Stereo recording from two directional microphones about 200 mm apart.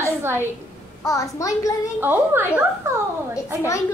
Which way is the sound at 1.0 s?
15° left (ahead or behind).